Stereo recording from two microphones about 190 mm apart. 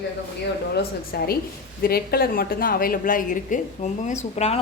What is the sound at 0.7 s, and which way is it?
A woman's voice, 55° left (ahead or behind).